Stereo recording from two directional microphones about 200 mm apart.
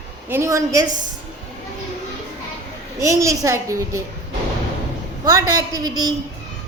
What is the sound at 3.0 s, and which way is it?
A child's voice, 15° right (ahead or behind).